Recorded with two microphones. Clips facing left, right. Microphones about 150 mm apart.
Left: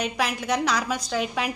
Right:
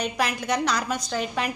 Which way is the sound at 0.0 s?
Centre (ahead or behind).